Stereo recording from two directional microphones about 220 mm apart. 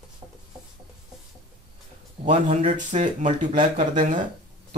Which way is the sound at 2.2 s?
30° right (ahead or behind).